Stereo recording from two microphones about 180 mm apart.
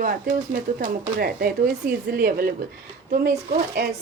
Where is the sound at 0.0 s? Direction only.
50° right (ahead or behind).